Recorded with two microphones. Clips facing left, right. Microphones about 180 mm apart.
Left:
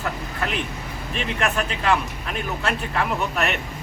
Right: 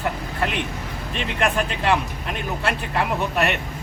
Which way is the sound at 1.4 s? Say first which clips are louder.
Right 3 dB; 20° right (ahead or behind).